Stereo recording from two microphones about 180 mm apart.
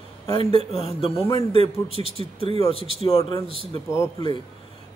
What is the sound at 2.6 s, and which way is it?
Speech, 30° left (ahead or behind).